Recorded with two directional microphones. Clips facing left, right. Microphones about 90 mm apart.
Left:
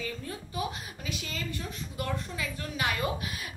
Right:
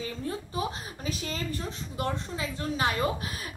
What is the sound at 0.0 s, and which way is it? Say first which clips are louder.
A woman's voice: right 3 dB; 30° right (ahead or behind).